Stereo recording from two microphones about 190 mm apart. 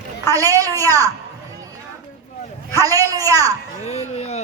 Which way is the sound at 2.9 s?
20° right (ahead or behind).